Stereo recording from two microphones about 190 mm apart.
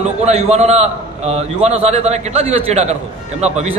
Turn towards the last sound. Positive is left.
turn(degrees=-35)  # may be behind; listen again after turning